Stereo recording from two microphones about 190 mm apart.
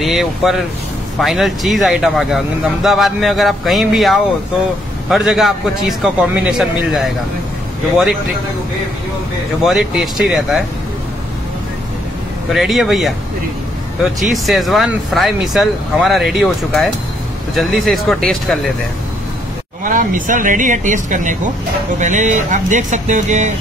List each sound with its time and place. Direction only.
0.0 s speech: centre (ahead or behind)
9.6 s speech: centre (ahead or behind)
12.5 s speech: centre (ahead or behind)
14.2 s speech: centre (ahead or behind)
19.8 s speech: 45° right (ahead or behind)